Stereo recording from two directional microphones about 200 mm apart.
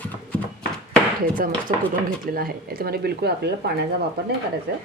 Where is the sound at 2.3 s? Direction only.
50° right (ahead or behind).